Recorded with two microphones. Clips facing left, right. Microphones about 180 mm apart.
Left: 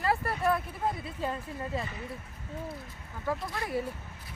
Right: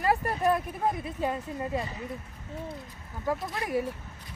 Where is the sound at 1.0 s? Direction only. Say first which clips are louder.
Right 4 dB; 15° right (ahead or behind).